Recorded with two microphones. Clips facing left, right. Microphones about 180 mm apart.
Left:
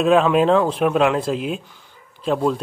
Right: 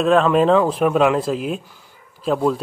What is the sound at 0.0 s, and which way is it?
Speech, 5° left (ahead or behind).